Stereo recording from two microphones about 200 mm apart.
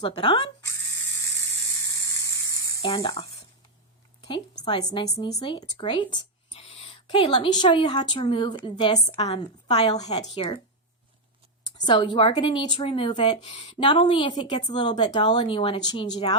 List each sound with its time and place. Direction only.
0.0 s a woman's voice: 25° left (ahead or behind)
0.7 s electric toothbrush: 15° left (ahead or behind)
2.8 s a woman's voice: 25° left (ahead or behind)
4.6 s a woman's voice: 20° left (ahead or behind)
11.9 s a woman's voice: 25° left (ahead or behind)
13.4 s a woman's voice: 35° left (ahead or behind)